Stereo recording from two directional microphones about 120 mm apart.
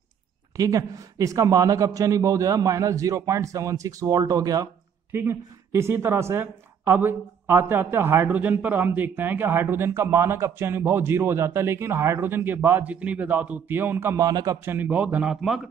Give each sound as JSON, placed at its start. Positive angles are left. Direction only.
{"t": 0.6, "sound": "a woman's voice", "side_deg": -30}
{"t": 14.2, "sound": "a man's voice", "side_deg": -30}
{"t": 14.6, "sound": "a man's voice", "side_deg": -15}